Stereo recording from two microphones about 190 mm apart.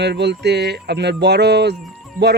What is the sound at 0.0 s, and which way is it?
A man's voice, 60° right (ahead or behind).